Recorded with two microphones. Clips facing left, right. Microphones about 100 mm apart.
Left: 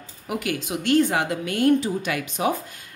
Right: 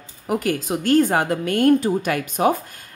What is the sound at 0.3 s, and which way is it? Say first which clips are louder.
A woman's voice: right 5 dB; 40° right (ahead or behind).